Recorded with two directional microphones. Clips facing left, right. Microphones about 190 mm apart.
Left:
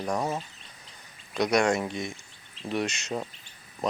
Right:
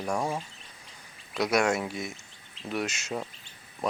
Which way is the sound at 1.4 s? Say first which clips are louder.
Left 2 dB; 5° right (ahead or behind).